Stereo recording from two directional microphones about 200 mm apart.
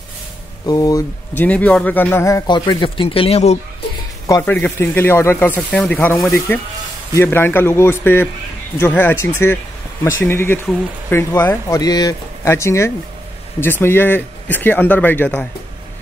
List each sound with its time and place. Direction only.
0.7 s speech: 20° left (ahead or behind)
4.3 s speech: 10° left (ahead or behind)